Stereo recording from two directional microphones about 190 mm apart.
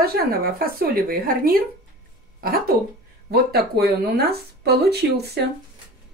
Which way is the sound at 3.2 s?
55° right (ahead or behind).